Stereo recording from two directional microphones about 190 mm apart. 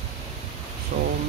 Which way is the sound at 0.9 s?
50° right (ahead or behind).